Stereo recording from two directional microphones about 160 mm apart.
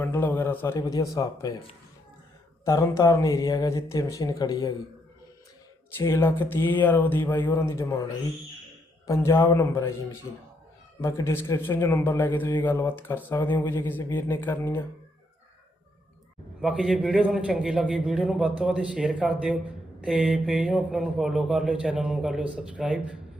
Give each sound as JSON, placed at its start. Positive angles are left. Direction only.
{"t": 0.0, "sound": "a man's voice", "side_deg": 10}
{"t": 2.6, "sound": "speech", "side_deg": 20}
{"t": 6.0, "sound": "a man's voice", "side_deg": 15}
{"t": 9.0, "sound": "a man's voice", "side_deg": 20}
{"t": 16.6, "sound": "speech", "side_deg": -5}